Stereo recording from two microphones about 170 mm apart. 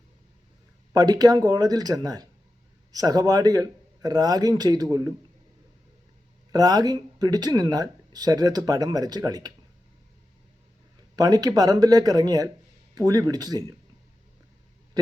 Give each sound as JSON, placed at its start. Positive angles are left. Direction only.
{"t": 0.9, "sound": "speech", "side_deg": -20}
{"t": 6.5, "sound": "speech", "side_deg": -25}
{"t": 11.2, "sound": "speech", "side_deg": -20}